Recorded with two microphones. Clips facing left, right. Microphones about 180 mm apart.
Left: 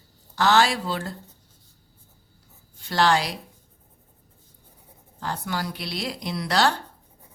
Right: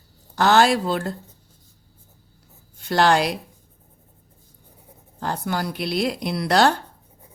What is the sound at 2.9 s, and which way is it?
Speech, 55° right (ahead or behind).